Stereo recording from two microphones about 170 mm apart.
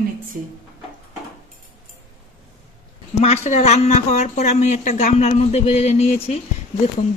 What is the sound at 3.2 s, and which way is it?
Speech, 40° left (ahead or behind).